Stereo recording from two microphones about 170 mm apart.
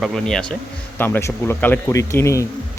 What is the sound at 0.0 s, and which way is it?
Speech, 5° left (ahead or behind).